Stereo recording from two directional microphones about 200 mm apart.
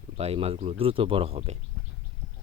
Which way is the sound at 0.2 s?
30° right (ahead or behind).